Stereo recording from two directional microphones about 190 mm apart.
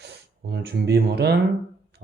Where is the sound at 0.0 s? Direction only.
60° right (ahead or behind).